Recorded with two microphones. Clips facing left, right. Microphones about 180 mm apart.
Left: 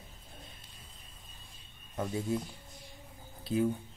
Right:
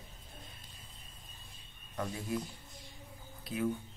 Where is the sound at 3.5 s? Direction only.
30° left (ahead or behind).